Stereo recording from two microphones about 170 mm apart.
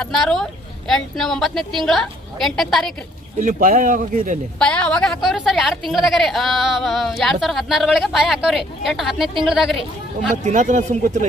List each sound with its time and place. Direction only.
0.0 s a woman's voice: 5° left (ahead or behind)
3.4 s speech: 55° right (ahead or behind)
4.6 s a woman's voice: 5° left (ahead or behind)
10.4 s speech: 45° right (ahead or behind)